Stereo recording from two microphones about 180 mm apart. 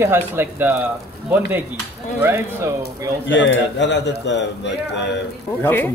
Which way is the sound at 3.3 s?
85° left.